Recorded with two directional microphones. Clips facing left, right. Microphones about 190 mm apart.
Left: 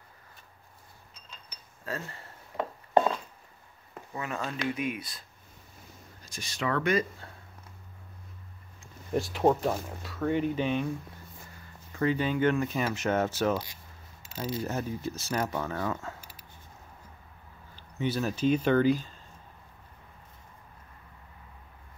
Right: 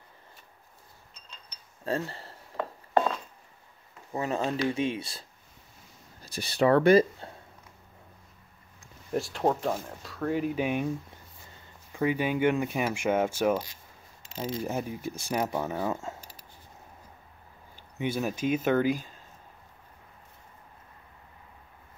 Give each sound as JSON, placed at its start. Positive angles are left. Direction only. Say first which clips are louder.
{"t": 1.9, "sound": "speech", "louder": "right 7 dB", "side_deg": -30}
{"t": 4.1, "sound": "speech", "louder": "right 6 dB", "side_deg": -30}
{"t": 6.2, "sound": "speech", "louder": "right 9 dB", "side_deg": -35}
{"t": 9.1, "sound": "speech", "louder": "left 2 dB", "side_deg": 0}
{"t": 17.9, "sound": "speech", "louder": "even", "side_deg": -15}